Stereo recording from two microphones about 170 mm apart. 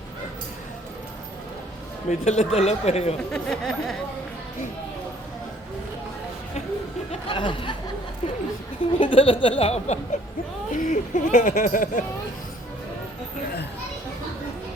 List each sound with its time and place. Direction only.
2.0 s speech: 45° left (ahead or behind)
3.3 s speech: centre (ahead or behind)
7.1 s speech: 30° left (ahead or behind)
9.0 s speech: 30° left (ahead or behind); by 12.0 s 50° left (ahead or behind)